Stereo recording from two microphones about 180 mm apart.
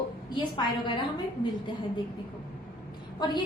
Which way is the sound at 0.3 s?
25° left (ahead or behind).